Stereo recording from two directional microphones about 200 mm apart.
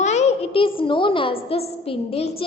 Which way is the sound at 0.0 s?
35° left (ahead or behind).